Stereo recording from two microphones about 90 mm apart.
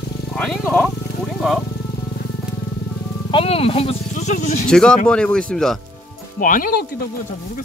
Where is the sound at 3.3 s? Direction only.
90° left.